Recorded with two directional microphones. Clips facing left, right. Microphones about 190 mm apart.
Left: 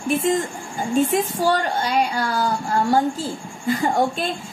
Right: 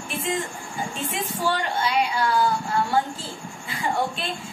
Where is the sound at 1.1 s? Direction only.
40° left (ahead or behind).